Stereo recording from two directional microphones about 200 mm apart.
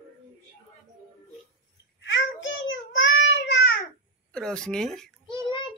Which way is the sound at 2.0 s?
65° left (ahead or behind).